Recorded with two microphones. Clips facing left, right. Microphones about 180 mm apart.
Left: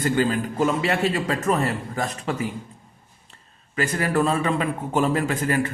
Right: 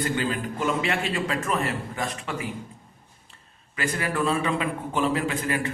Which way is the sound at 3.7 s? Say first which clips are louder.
Left 5 dB; 40° left (ahead or behind).